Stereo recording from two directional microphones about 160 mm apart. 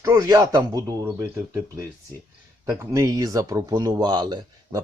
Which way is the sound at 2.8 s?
20° right (ahead or behind).